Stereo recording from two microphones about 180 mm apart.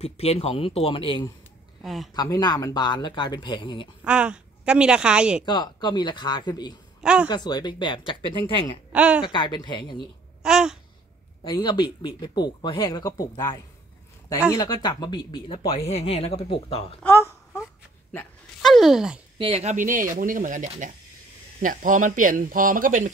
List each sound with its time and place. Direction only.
0.0 s speech: 35° left (ahead or behind)
1.8 s speech: centre (ahead or behind)
2.1 s speech: 20° left (ahead or behind)
4.0 s a woman's voice: 5° right (ahead or behind)
5.4 s speech: 25° left (ahead or behind)
7.0 s speech: 5° right (ahead or behind)
7.2 s speech: 25° left (ahead or behind)
8.9 s a woman's voice: 10° right (ahead or behind)
9.2 s speech: 25° left (ahead or behind)
10.4 s babbling: 5° right (ahead or behind)
11.4 s speech: 25° left (ahead or behind)
17.0 s a sound: 15° left (ahead or behind)
18.6 s speech: centre (ahead or behind)
19.3 s speech: 30° right (ahead or behind); by 23.1 s 45° right (ahead or behind)